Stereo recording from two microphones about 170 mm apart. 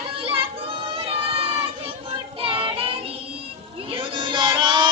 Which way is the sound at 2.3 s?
30° right (ahead or behind).